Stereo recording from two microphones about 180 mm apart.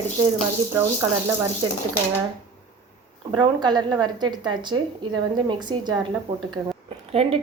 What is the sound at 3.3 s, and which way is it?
A woman's voice, 25° right (ahead or behind).